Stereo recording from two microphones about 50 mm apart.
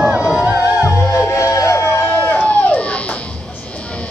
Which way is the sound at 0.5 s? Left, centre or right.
Left.